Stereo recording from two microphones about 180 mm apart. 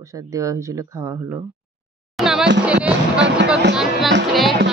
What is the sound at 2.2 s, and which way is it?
Music, 5° right (ahead or behind).